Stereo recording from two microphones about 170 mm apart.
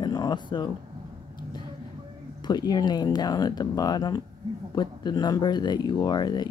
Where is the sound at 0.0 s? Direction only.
25° left (ahead or behind).